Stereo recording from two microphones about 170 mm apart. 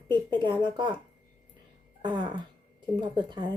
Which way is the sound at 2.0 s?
25° right (ahead or behind).